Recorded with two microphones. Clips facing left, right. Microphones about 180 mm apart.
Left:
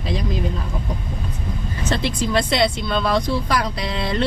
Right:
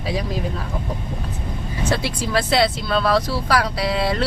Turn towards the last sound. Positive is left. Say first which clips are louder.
# right 2 dB
turn(degrees=-5)  # may be behind; listen again after turning